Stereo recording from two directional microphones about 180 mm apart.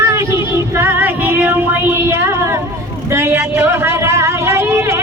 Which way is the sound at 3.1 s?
15° right (ahead or behind).